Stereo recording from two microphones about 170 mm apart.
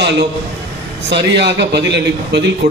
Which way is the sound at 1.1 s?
90° right.